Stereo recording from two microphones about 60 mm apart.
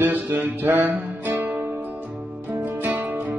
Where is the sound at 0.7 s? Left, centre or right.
Right.